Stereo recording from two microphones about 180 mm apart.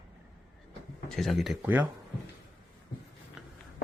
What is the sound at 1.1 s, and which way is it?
Speech, centre (ahead or behind).